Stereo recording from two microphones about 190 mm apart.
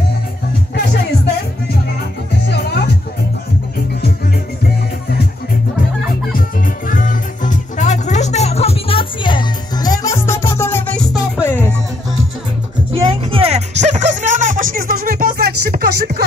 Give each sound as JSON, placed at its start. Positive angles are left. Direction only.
{"t": 6.9, "sound": "music", "side_deg": 45}
{"t": 13.0, "sound": "music", "side_deg": -30}